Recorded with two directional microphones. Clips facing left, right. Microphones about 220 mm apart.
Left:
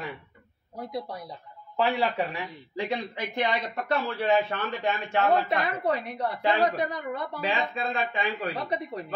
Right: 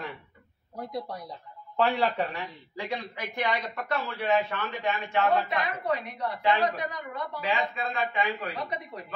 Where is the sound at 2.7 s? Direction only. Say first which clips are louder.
Left 4 dB; 20° left (ahead or behind).